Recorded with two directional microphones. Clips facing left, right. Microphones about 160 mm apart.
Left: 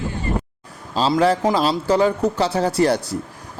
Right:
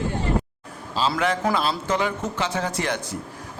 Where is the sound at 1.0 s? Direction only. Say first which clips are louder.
Left 6 dB; 35° left (ahead or behind).